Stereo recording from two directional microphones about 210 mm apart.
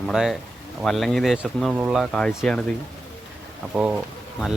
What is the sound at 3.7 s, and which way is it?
Speech, 5° right (ahead or behind).